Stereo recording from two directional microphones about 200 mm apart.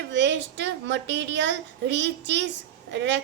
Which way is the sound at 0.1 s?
65° right (ahead or behind).